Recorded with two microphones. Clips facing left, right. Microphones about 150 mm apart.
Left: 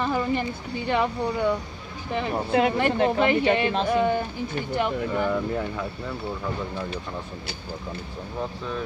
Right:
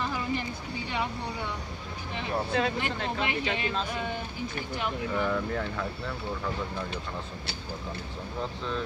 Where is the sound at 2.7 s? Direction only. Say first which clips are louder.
Left 9 dB; 55° left (ahead or behind).